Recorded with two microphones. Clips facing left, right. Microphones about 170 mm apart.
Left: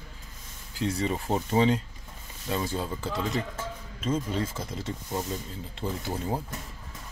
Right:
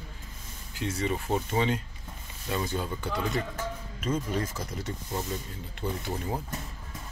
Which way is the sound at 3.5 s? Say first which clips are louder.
Right 2 dB; 25° left (ahead or behind).